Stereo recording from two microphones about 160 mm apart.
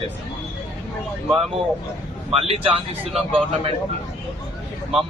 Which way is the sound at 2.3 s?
35° right (ahead or behind).